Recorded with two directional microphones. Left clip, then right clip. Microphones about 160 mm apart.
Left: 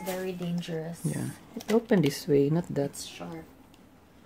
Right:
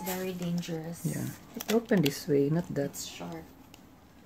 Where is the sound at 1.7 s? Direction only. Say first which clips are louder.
Left 3 dB; 20° left (ahead or behind).